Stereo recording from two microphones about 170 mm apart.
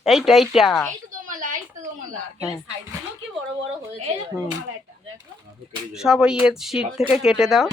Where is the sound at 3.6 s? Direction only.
35° right (ahead or behind).